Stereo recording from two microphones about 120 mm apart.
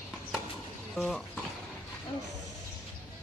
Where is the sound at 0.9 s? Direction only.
Centre (ahead or behind).